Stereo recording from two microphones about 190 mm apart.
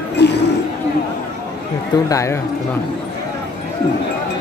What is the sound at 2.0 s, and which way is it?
Speech, 15° left (ahead or behind).